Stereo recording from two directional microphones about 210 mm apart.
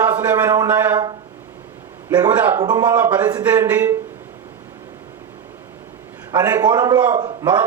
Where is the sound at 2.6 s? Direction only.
20° right (ahead or behind).